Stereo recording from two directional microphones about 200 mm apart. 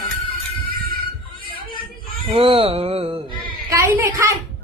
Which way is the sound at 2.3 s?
30° right (ahead or behind).